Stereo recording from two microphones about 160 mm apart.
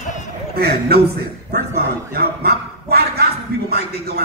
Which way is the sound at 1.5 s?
75° right (ahead or behind).